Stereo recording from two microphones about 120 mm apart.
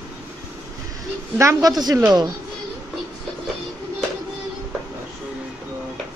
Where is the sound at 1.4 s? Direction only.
25° right (ahead or behind).